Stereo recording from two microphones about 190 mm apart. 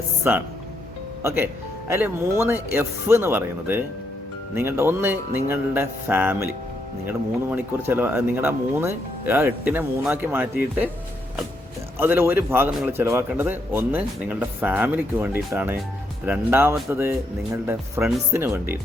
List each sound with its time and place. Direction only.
0.2 s speech: 10° right (ahead or behind)
11.9 s speech: 10° right (ahead or behind)